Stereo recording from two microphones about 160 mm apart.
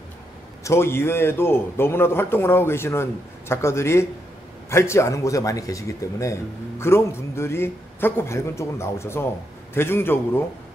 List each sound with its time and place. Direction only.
0.7 s speech: 15° left (ahead or behind)